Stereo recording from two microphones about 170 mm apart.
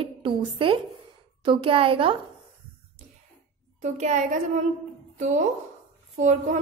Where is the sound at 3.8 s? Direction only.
45° right (ahead or behind).